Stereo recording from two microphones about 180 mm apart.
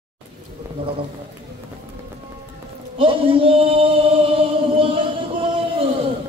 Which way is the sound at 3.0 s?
30° right (ahead or behind).